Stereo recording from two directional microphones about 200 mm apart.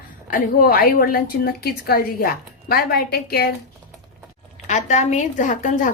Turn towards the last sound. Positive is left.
turn(degrees=40)  # may be behind; listen again after turning